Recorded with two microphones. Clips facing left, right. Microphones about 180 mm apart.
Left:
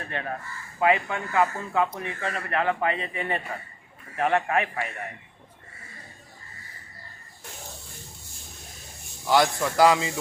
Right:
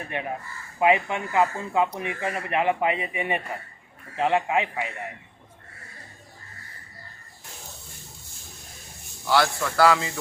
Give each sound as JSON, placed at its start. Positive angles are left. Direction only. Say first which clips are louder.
{"t": 0.0, "sound": "a man's voice", "louder": "right 1 dB", "side_deg": -15}
{"t": 9.2, "sound": "a man's voice", "louder": "left 1 dB", "side_deg": 15}